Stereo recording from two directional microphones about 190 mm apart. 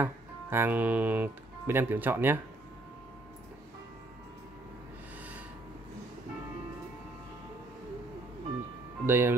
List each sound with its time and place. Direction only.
0.0 s speech: 10° right (ahead or behind)
9.0 s speech: 10° right (ahead or behind)